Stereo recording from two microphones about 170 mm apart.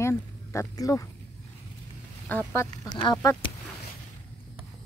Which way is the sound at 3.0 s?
25° left (ahead or behind).